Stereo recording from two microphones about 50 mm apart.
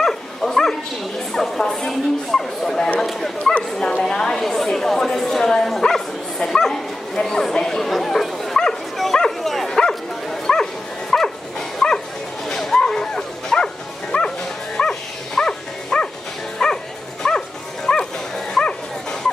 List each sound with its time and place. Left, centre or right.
0.0 s dog: centre
1.3 s speech: centre
9.2 s bow-wow: centre
14.1 s bow-wow: left
14.8 s bow-wow: centre
17.9 s dog: centre
18.5 s bow-wow: centre